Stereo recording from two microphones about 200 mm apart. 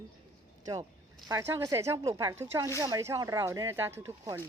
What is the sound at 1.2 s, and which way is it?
A woman's voice, 15° right (ahead or behind).